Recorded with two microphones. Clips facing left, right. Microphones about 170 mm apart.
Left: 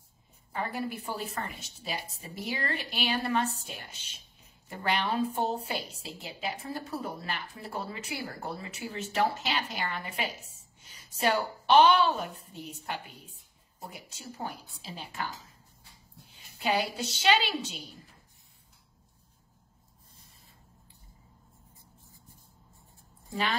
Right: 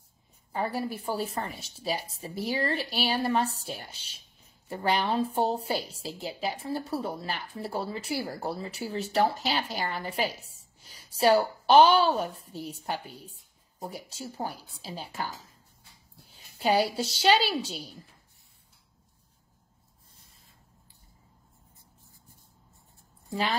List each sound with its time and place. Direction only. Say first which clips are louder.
0.5 s a woman's voice: right 3 dB; 35° right (ahead or behind)
16.5 s a woman's voice: right 5 dB; 35° right (ahead or behind)